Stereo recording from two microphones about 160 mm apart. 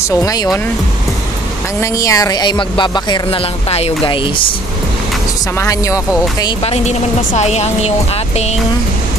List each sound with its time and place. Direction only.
0.2 s speech: 20° left (ahead or behind)
1.8 s speech: 20° left (ahead or behind); by 4.2 s 35° left (ahead or behind)
5.6 s speech: 20° left (ahead or behind)
6.6 s speech: 40° left (ahead or behind)